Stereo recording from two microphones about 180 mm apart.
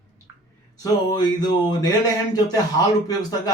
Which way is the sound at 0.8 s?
25° left (ahead or behind).